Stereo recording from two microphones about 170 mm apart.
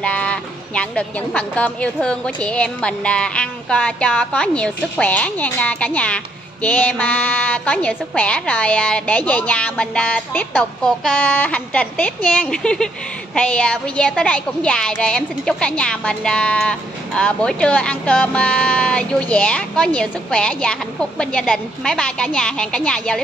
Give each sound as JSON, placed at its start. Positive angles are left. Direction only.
{"t": 0.0, "sound": "a woman's voice", "side_deg": 5}